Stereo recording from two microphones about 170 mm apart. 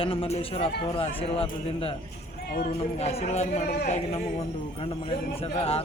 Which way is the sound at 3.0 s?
40° left (ahead or behind).